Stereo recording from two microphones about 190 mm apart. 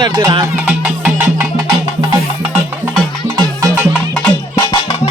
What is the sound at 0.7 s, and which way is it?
Music, 10° right (ahead or behind).